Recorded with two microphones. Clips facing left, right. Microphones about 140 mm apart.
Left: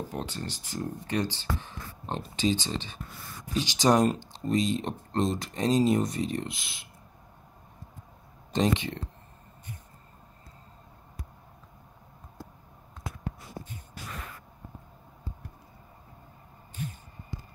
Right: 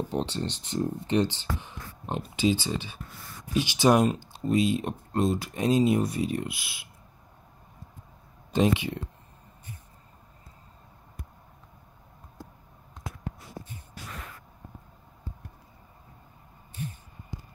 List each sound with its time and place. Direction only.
0.1 s speech: 25° right (ahead or behind); by 6.9 s 5° right (ahead or behind)
8.5 s speech: 10° right (ahead or behind)